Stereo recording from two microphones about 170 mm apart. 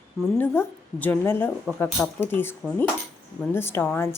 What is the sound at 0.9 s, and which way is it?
Speech, 10° left (ahead or behind).